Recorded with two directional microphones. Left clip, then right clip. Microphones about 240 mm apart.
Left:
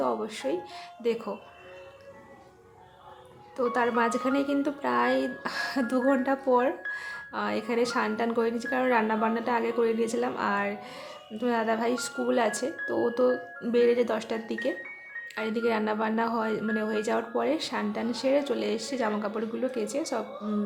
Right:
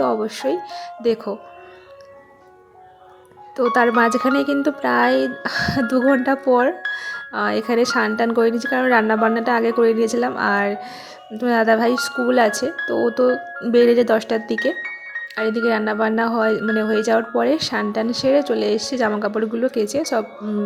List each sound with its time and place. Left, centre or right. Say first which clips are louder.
0.0 s speech: right 9 dB; right
3.7 s speech: right 10 dB; right